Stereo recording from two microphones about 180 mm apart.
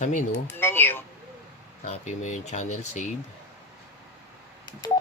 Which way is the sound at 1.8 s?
40° left (ahead or behind).